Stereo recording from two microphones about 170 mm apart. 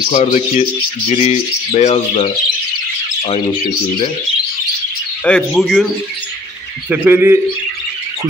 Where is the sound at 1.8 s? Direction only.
40° left (ahead or behind).